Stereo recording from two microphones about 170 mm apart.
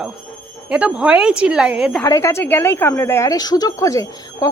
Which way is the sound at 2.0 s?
20° left (ahead or behind).